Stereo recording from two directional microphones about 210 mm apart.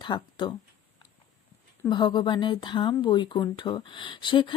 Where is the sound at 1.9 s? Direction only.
20° left (ahead or behind).